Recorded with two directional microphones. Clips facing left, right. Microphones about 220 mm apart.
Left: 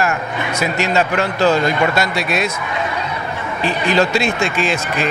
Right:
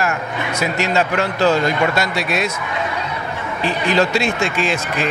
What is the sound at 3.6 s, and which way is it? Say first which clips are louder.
Speech: left 1 dB; 15° left (ahead or behind).